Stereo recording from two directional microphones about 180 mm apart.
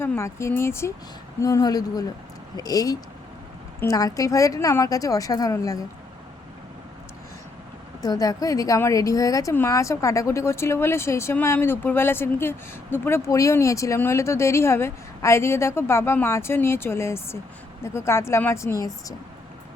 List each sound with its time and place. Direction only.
0.0 s a woman's voice: 15° left (ahead or behind)
8.0 s a woman's voice: 20° left (ahead or behind)